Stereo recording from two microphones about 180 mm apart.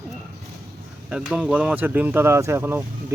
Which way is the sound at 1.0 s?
5° right (ahead or behind).